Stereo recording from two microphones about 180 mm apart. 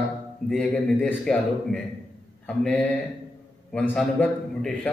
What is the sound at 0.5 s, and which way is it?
A man's voice, 5° left (ahead or behind).